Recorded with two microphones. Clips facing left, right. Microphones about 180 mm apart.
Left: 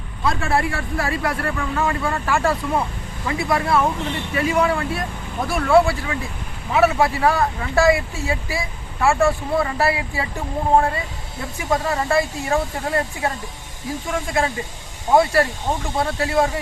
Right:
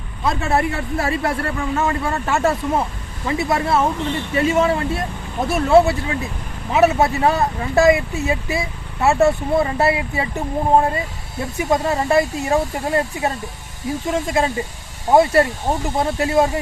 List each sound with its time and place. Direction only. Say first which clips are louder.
0.3 s speech: right 2 dB; 20° right (ahead or behind)
11.5 s speech: right 3 dB; 20° right (ahead or behind)